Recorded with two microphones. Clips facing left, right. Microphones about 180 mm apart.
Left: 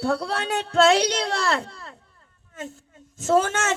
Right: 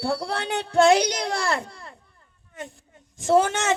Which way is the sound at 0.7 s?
15° right (ahead or behind).